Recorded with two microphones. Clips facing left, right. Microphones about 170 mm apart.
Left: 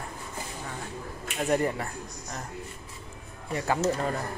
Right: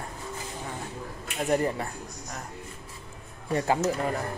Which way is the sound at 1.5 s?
25° right (ahead or behind).